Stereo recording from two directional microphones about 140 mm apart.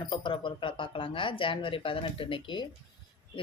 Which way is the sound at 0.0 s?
35° left (ahead or behind).